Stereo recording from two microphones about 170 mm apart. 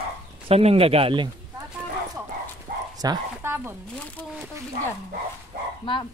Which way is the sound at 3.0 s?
20° right (ahead or behind).